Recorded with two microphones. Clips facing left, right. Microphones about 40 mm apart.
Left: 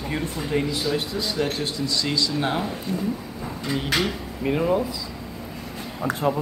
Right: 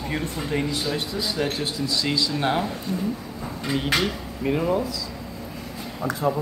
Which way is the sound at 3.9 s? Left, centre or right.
Centre.